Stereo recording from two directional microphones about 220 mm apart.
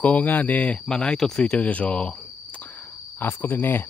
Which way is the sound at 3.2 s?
10° left (ahead or behind).